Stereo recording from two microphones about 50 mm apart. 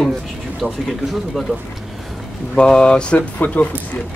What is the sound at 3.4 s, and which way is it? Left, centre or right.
Speech, left.